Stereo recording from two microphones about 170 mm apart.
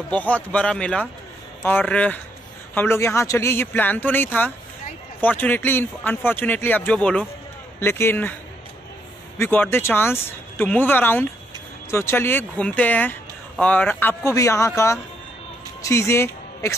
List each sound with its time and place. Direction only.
0.1 s speech: 10° left (ahead or behind)
9.4 s speech: 10° left (ahead or behind)
15.8 s a woman's voice: 15° left (ahead or behind)